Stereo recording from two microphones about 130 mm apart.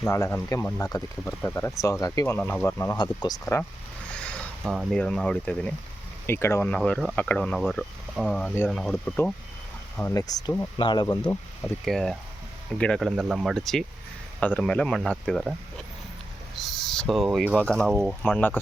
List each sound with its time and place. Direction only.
0.0 s speech: 20° left (ahead or behind)
0.8 s speech: 30° left (ahead or behind); by 3.7 s 15° left (ahead or behind)
4.1 s a sound: 5° left (ahead or behind)
4.6 s speech: 5° right (ahead or behind)
4.9 s speech: 5° left (ahead or behind)
6.2 s speech: 20° left (ahead or behind)
6.7 s speech: 5° left (ahead or behind)
10.2 s speech: 30° left (ahead or behind)
11.2 s speech: 15° left (ahead or behind)
11.9 s speech: 5° left (ahead or behind)
16.6 s speech: centre (ahead or behind)